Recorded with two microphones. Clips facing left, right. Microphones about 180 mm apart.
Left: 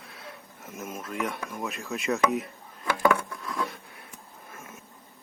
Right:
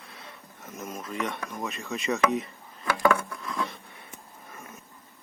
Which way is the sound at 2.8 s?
20° left (ahead or behind).